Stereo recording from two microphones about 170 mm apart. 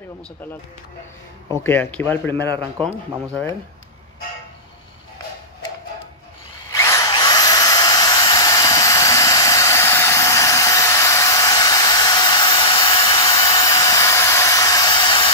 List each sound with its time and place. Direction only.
1.6 s speech: 10° left (ahead or behind)
6.7 s drill: 20° left (ahead or behind)